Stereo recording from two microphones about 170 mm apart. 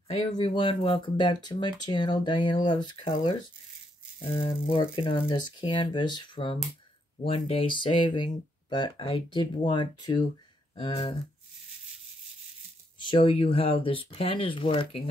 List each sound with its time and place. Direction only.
0.4 s speech: 30° left (ahead or behind)
13.0 s speech: 30° left (ahead or behind)